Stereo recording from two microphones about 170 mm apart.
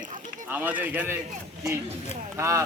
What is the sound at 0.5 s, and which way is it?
Speech, 10° right (ahead or behind).